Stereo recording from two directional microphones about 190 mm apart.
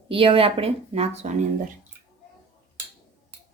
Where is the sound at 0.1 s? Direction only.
30° right (ahead or behind).